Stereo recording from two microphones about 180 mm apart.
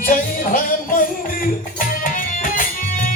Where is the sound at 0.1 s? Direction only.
50° left (ahead or behind).